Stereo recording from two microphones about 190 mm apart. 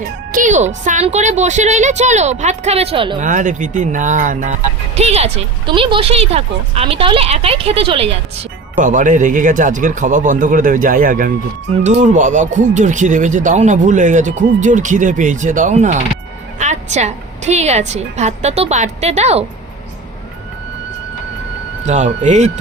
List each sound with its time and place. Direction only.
0.3 s speech: 45° right (ahead or behind); by 3.2 s 30° right (ahead or behind)
3.2 s speech: 40° right (ahead or behind)
8.8 s speech: 40° right (ahead or behind)
21.8 s speech: 40° right (ahead or behind)